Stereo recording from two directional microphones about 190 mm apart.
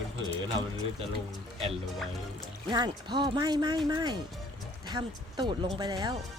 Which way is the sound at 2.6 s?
20° right (ahead or behind).